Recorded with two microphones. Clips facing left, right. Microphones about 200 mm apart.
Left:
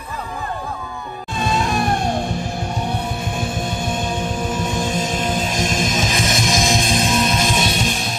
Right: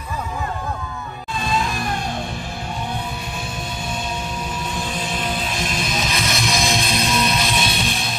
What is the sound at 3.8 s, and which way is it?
Music, 50° left (ahead or behind).